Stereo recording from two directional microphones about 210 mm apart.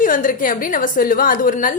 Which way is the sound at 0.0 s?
40° left (ahead or behind).